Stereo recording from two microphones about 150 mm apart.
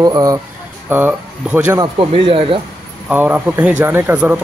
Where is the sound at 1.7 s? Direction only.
35° right (ahead or behind).